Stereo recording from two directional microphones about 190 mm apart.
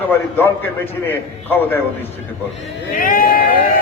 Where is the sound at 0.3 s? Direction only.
10° left (ahead or behind).